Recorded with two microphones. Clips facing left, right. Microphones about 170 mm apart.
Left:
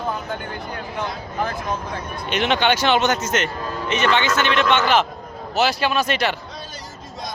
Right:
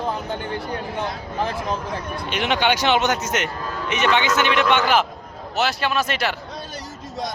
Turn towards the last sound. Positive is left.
turn(degrees=-5)  # may be behind; listen again after turning